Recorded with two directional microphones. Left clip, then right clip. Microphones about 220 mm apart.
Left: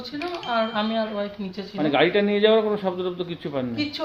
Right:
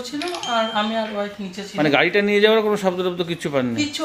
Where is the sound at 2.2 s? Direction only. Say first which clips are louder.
Right 3 dB; 55° right (ahead or behind).